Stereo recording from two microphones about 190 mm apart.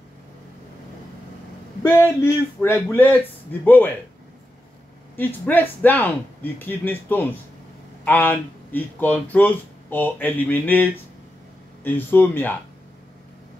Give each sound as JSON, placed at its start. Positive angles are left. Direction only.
{"t": 1.8, "sound": "speech", "side_deg": 15}
{"t": 5.1, "sound": "speech", "side_deg": 10}